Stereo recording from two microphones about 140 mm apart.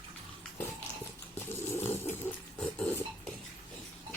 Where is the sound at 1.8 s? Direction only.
15° left (ahead or behind).